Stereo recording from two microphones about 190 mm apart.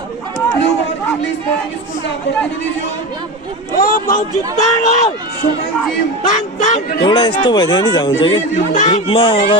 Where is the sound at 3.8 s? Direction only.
45° left (ahead or behind).